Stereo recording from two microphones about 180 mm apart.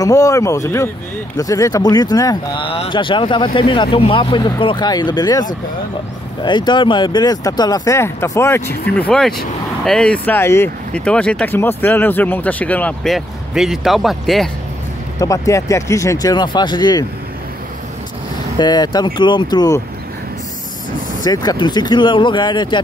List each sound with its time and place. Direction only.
0.0 s speech: 20° left (ahead or behind); by 14.5 s centre (ahead or behind)
15.1 s speech: 20° left (ahead or behind)
18.6 s speech: 25° left (ahead or behind)
21.2 s speech: 20° left (ahead or behind)